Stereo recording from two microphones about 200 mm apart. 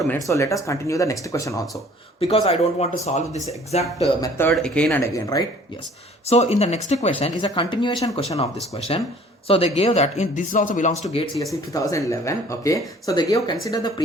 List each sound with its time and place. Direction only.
0.3 s speech: 15° left (ahead or behind)
2.2 s speech: 30° left (ahead or behind)
4.2 s speech: 10° left (ahead or behind)
6.2 s speech: 30° left (ahead or behind)
11.7 s speech: 15° left (ahead or behind)